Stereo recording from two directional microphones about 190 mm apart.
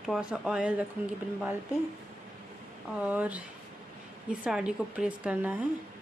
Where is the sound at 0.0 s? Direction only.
5° right (ahead or behind).